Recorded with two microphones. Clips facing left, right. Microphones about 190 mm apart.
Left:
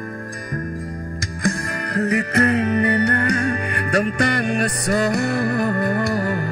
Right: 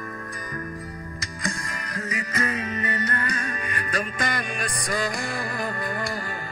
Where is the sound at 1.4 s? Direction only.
65° left (ahead or behind).